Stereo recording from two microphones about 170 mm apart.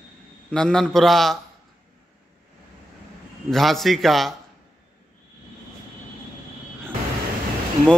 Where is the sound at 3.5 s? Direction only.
Centre (ahead or behind).